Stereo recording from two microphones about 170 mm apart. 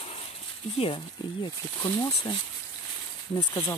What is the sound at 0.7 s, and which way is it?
Speech, 30° left (ahead or behind).